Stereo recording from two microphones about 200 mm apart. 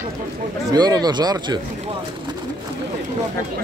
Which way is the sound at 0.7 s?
20° right (ahead or behind).